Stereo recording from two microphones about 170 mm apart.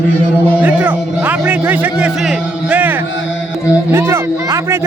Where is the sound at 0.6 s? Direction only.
10° right (ahead or behind).